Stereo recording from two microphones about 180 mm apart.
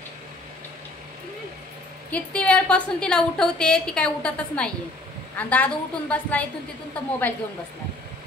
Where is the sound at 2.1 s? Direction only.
5° left (ahead or behind).